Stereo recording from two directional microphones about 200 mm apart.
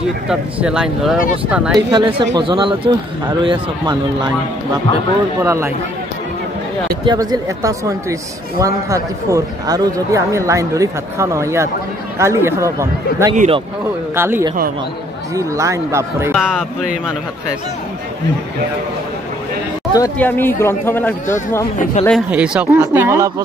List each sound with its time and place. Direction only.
0.3 s speech: 5° right (ahead or behind)
1.9 s a man's voice: 25° right (ahead or behind)
5.4 s speech: 15° right (ahead or behind)
7.1 s speech: 20° right (ahead or behind)
16.3 s speech: centre (ahead or behind)
19.9 s speech: 15° left (ahead or behind)
22.0 s speech: 35° left (ahead or behind)
22.3 s speech: 5° right (ahead or behind)